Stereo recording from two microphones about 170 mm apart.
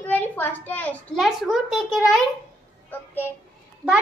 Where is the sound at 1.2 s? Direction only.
Centre (ahead or behind).